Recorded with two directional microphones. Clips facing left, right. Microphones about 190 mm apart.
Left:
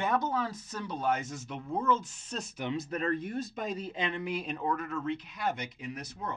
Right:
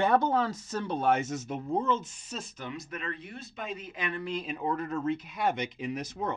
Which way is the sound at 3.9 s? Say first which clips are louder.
Right 2 dB; 20° left (ahead or behind).